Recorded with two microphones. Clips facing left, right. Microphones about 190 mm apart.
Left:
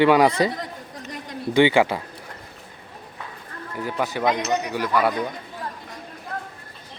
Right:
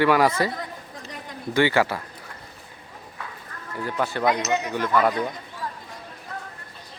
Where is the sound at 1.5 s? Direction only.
15° left (ahead or behind).